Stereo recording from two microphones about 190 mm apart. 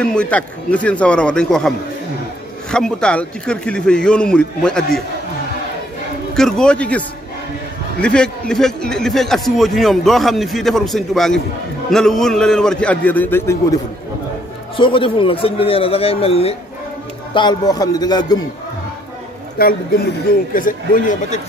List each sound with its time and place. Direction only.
0.0 s a man's voice: 5° left (ahead or behind)
2.7 s a man's voice: 5° left (ahead or behind)
6.3 s a man's voice: 5° left (ahead or behind)
14.8 s a man's voice: 25° left (ahead or behind)
19.6 s speech: 55° left (ahead or behind)